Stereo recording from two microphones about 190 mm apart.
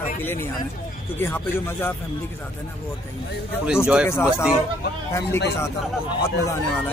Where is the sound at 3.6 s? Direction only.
5° right (ahead or behind).